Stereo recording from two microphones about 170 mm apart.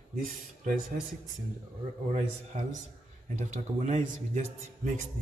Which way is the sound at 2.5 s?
45° right (ahead or behind).